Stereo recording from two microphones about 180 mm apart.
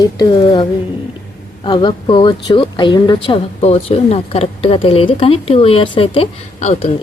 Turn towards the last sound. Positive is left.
turn(degrees=35)  # may be behind; listen again after turning